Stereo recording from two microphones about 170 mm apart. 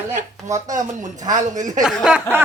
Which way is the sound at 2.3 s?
15° right (ahead or behind).